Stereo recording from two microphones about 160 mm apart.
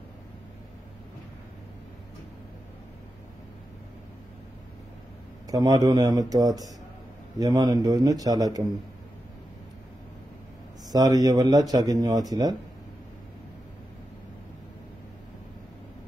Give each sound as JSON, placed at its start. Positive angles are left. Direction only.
{"t": 5.5, "sound": "speech", "side_deg": -25}
{"t": 10.9, "sound": "speech", "side_deg": -20}